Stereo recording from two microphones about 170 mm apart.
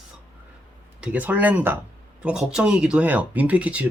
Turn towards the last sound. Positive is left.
turn(degrees=-10)  # may be behind; listen again after turning